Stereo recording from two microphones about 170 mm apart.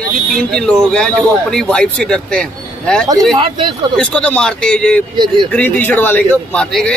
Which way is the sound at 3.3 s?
30° right (ahead or behind).